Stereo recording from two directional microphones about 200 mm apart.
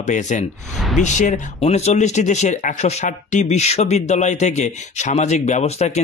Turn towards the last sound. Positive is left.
turn(degrees=35)  # may be behind; listen again after turning